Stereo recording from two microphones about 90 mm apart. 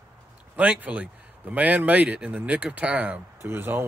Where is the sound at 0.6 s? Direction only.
15° right (ahead or behind).